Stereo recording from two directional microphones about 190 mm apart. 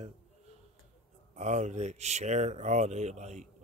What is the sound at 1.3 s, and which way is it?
Speech, 40° right (ahead or behind).